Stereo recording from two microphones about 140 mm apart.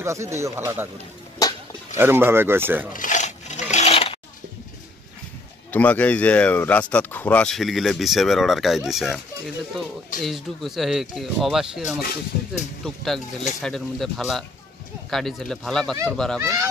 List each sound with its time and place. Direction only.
0.0 s speech: 20° right (ahead or behind)
2.0 s speech: 15° right (ahead or behind)
2.9 s rub: 70° left (ahead or behind); by 4.2 s 45° left (ahead or behind)
5.7 s speech: 10° left (ahead or behind)
10.2 s speech: centre (ahead or behind)
12.0 s speech: 90° left
12.8 s speech: centre (ahead or behind)
16.3 s speech: 25° right (ahead or behind)